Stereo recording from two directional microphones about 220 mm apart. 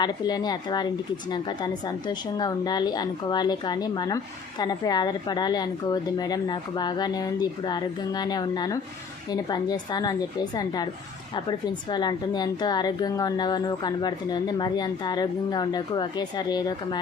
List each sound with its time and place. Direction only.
0.0 s a woman's voice: 20° left (ahead or behind)